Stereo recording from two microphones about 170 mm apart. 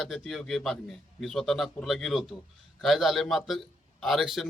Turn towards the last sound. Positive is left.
turn(degrees=0)  # may be behind; listen again after turning